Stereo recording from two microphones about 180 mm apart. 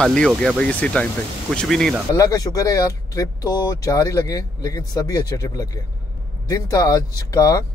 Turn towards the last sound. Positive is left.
turn(degrees=20)  # may be behind; listen again after turning